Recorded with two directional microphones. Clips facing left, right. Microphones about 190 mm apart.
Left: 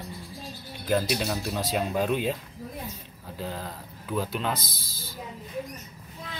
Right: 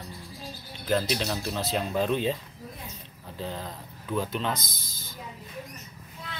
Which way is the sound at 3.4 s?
5° left (ahead or behind).